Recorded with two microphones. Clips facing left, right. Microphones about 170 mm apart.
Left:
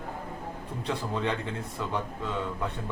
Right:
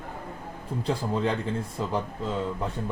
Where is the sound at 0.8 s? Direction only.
30° right (ahead or behind).